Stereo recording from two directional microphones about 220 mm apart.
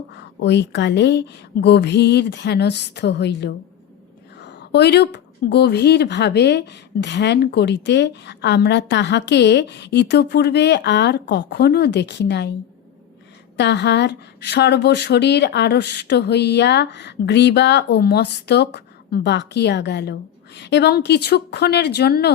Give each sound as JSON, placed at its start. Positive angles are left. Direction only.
{"t": 0.1, "sound": "a woman's voice", "side_deg": 50}
{"t": 13.6, "sound": "speech", "side_deg": 50}